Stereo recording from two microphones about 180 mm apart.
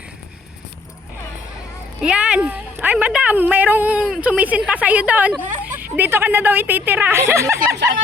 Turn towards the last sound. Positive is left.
turn(degrees=-15)  # may be behind; listen again after turning